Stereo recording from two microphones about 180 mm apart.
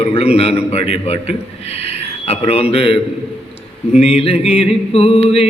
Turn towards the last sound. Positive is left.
turn(degrees=35)  # may be behind; listen again after turning